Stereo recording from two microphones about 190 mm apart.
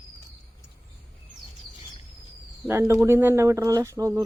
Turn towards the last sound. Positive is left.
turn(degrees=-15)  # may be behind; listen again after turning